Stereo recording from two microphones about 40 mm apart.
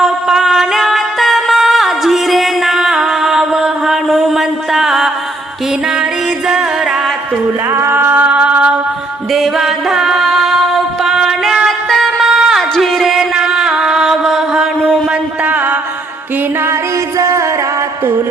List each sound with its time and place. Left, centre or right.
0.0 s music: centre
7.9 s a sound: right
8.3 s music: right
9.3 s music: centre
12.3 s a sound: centre
12.7 s music: centre
13.3 s music: centre
15.4 s music: right